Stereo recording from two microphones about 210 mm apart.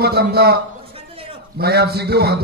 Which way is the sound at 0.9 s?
25° right (ahead or behind).